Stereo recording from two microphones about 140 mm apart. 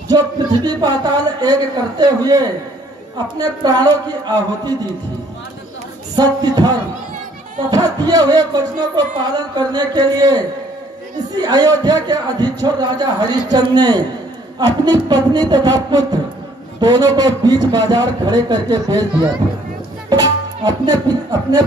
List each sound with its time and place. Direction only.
0.1 s speech: 30° right (ahead or behind)
6.1 s speech: 30° right (ahead or behind)
7.7 s speech: 30° right (ahead or behind)
20.1 s speech: 30° right (ahead or behind)